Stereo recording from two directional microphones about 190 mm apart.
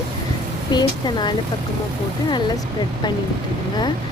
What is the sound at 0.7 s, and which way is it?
Speech, 20° left (ahead or behind).